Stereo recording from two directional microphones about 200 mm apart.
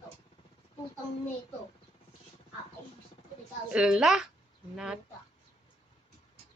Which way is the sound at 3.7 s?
5° right (ahead or behind).